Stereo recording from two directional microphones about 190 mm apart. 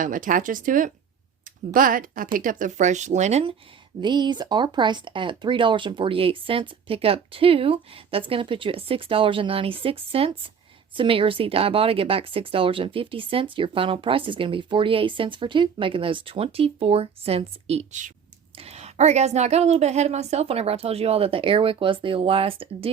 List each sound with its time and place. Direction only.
0.0 s speech: 45° right (ahead or behind)
4.0 s a woman's voice: 25° right (ahead or behind)